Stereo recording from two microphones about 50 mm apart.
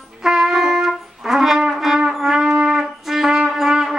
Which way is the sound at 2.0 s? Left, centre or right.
Centre.